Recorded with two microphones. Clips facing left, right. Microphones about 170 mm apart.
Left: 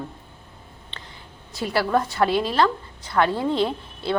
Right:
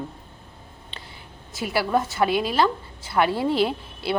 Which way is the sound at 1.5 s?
5° right (ahead or behind).